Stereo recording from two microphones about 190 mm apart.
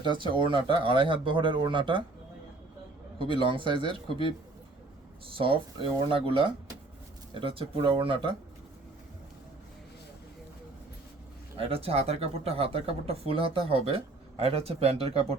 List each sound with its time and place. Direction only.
0.0 s speech: 25° right (ahead or behind)
3.2 s speech: 25° right (ahead or behind)
5.3 s speech: 30° right (ahead or behind)
11.7 s speech: 30° right (ahead or behind)